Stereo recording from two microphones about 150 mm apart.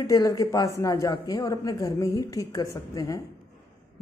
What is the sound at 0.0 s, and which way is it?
A man's voice, 25° left (ahead or behind).